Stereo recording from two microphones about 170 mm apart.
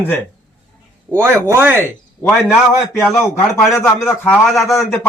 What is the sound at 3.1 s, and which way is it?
A man's voice, 15° left (ahead or behind).